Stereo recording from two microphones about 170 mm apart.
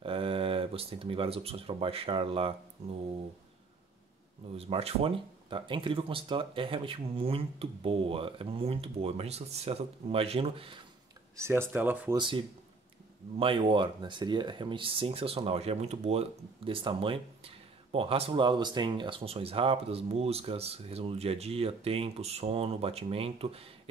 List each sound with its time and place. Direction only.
0.0 s speech: 30° right (ahead or behind)
4.6 s speech: 35° right (ahead or behind)
11.3 s speech: 15° right (ahead or behind)
12.2 s speech: 30° right (ahead or behind)